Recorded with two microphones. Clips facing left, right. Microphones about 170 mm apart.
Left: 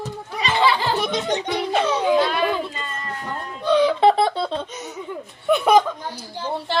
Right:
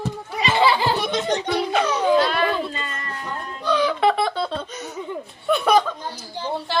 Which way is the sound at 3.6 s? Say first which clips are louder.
Left 4 dB; 25° left (ahead or behind).